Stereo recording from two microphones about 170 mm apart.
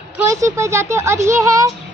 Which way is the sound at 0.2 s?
15° right (ahead or behind).